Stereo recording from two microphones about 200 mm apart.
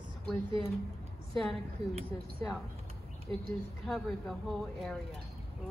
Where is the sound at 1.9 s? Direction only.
30° right (ahead or behind).